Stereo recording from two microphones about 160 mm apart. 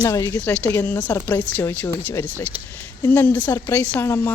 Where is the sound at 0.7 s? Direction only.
10° left (ahead or behind).